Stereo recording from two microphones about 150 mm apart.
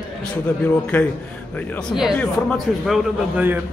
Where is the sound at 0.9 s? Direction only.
10° left (ahead or behind).